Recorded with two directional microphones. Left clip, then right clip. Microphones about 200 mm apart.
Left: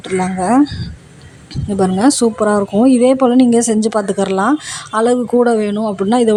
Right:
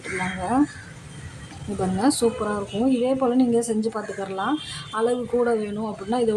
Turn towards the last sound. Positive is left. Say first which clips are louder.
# left 10 dB
turn(degrees=35)  # may be behind; listen again after turning